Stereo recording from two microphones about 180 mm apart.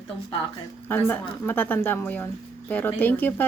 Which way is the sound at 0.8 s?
10° left (ahead or behind).